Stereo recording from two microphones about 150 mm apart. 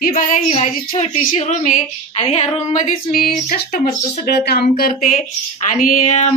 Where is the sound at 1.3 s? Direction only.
55° left (ahead or behind).